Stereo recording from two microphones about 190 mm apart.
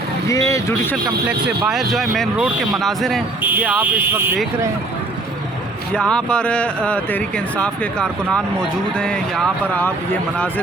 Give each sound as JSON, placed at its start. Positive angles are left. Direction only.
{"t": 0.3, "sound": "speech", "side_deg": 15}
{"t": 1.3, "sound": "speech", "side_deg": -5}
{"t": 5.9, "sound": "speech", "side_deg": 5}